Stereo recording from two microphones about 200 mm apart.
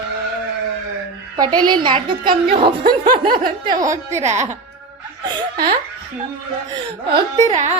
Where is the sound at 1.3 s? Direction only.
20° right (ahead or behind).